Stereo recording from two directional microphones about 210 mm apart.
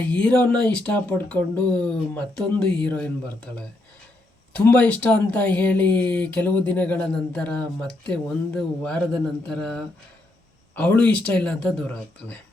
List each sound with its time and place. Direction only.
0.1 s speech: 5° left (ahead or behind)
4.5 s speech: 5° left (ahead or behind)